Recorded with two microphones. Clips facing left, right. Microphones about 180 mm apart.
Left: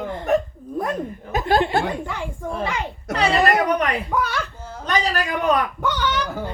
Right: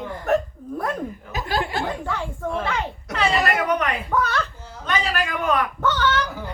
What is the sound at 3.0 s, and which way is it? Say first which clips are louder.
Speech: left 4 dB; 40° left (ahead or behind).